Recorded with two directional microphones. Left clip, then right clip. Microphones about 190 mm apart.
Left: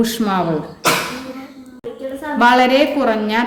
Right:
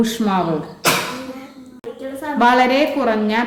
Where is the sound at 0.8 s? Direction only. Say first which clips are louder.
Left 1 dB; 5° right (ahead or behind).